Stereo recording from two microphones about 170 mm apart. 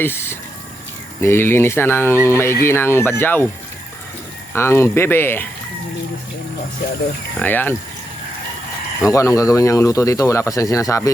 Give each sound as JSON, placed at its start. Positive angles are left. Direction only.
{"t": 0.0, "sound": "speech", "side_deg": 15}
{"t": 4.5, "sound": "speech", "side_deg": 15}
{"t": 7.3, "sound": "speech", "side_deg": 10}
{"t": 9.0, "sound": "speech", "side_deg": 20}